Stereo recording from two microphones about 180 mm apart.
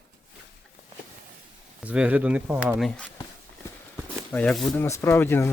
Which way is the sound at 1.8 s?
5° right (ahead or behind).